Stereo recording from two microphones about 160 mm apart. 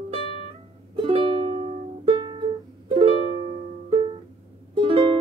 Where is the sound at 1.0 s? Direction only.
35° right (ahead or behind).